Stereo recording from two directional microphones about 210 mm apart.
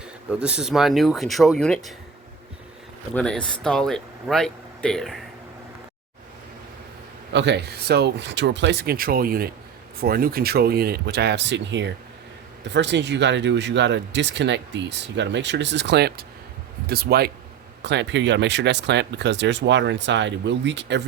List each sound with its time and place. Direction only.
0.0 s speech: 5° right (ahead or behind)
3.2 s speech: 5° left (ahead or behind)
7.3 s speech: 55° right (ahead or behind)